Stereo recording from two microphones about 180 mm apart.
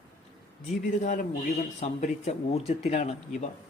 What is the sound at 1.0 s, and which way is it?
A man's voice, 50° left (ahead or behind).